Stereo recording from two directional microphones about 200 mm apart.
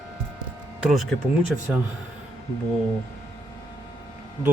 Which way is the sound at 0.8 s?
Centre (ahead or behind).